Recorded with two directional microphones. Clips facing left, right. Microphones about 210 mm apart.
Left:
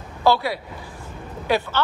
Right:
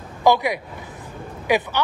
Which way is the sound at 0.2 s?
15° right (ahead or behind).